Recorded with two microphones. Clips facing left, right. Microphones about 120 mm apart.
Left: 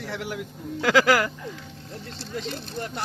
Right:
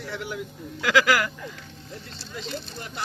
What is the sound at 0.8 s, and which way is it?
Speech, 35° left (ahead or behind).